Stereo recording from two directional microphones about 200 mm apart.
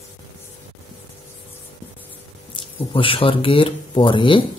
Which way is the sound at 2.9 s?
25° left (ahead or behind).